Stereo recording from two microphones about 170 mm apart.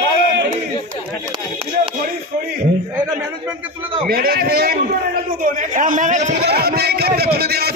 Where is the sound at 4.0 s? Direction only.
60° right (ahead or behind).